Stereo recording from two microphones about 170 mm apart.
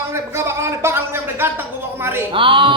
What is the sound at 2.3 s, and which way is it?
Speech, 30° right (ahead or behind).